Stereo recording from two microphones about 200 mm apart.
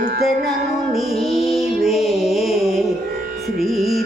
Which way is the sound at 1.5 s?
Centre (ahead or behind).